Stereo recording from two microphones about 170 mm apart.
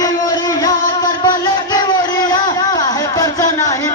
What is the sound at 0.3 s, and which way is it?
Music, 25° left (ahead or behind).